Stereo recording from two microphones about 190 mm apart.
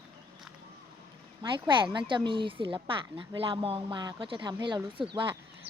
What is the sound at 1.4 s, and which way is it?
Speech, 25° right (ahead or behind).